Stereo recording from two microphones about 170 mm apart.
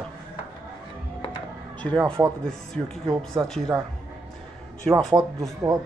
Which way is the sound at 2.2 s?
10° right (ahead or behind).